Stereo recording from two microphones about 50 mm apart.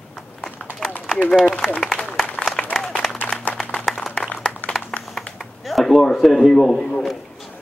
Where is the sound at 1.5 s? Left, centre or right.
Centre.